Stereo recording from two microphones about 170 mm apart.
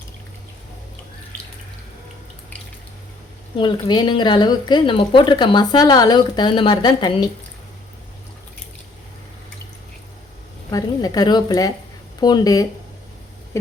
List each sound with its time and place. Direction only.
3.6 s speech: 25° left (ahead or behind)
10.7 s speech: 20° left (ahead or behind)